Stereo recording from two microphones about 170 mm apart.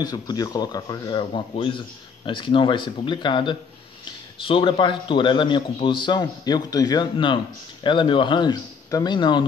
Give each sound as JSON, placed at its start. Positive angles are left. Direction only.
{"t": 0.0, "sound": "a man's voice", "side_deg": 25}